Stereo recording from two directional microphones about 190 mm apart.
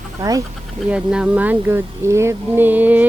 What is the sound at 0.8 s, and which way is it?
Speech, 5° right (ahead or behind).